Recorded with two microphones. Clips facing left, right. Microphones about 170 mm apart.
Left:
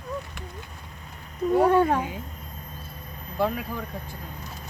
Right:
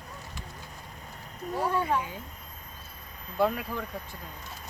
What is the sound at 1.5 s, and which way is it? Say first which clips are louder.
Speech: left 8 dB; 60° left (ahead or behind).